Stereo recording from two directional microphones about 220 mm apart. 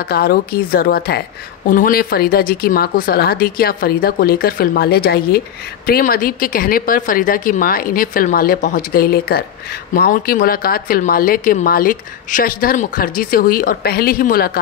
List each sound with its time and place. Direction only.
0.0 s speech: 45° left (ahead or behind)